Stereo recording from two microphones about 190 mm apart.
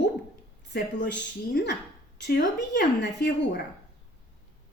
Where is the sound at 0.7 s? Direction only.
65° left (ahead or behind).